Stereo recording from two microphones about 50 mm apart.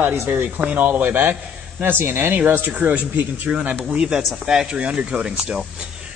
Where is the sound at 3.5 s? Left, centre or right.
Right.